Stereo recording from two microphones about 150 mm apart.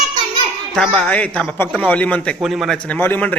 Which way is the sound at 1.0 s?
10° left (ahead or behind).